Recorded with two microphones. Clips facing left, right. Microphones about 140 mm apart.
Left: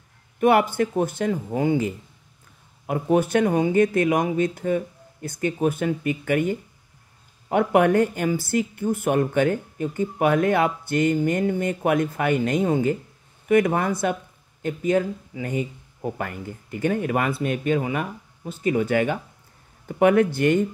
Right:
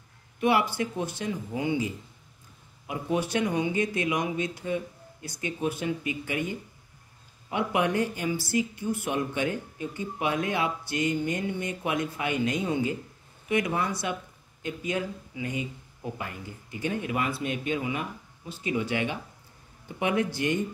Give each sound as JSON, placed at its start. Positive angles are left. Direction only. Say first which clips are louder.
{"t": 0.4, "sound": "a woman's voice", "louder": "left 6 dB", "side_deg": 50}